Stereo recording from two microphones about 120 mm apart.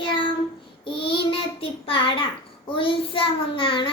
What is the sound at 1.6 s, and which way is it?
Child singing, 50° left (ahead or behind).